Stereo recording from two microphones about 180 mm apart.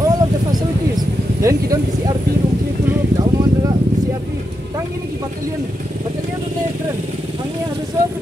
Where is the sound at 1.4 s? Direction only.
15° right (ahead or behind).